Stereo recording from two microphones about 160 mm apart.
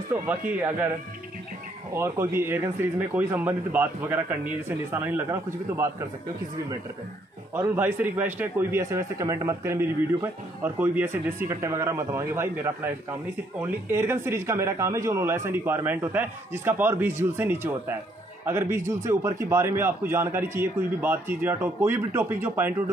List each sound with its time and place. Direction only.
0.1 s a man's voice: 10° right (ahead or behind)
2.0 s a man's voice: 15° right (ahead or behind)
7.5 s a man's voice: 15° right (ahead or behind)